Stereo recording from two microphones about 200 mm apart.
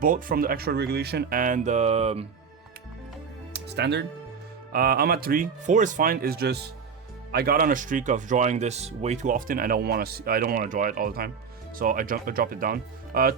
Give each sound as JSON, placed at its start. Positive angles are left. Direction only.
{"t": 0.0, "sound": "speech", "side_deg": -45}
{"t": 3.5, "sound": "speech", "side_deg": -55}